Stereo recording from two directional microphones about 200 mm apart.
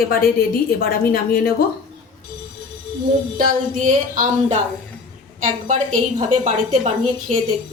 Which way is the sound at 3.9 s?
40° right (ahead or behind).